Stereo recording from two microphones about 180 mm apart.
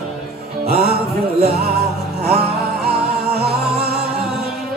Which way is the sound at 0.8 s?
60° right (ahead or behind).